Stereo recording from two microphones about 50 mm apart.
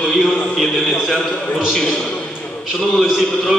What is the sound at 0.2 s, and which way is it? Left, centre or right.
A man's voice, centre.